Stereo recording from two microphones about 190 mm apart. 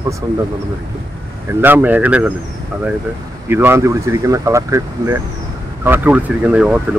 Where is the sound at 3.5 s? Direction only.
10° right (ahead or behind).